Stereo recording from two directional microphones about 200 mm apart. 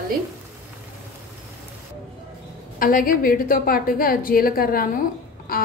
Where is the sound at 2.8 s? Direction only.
45° left (ahead or behind).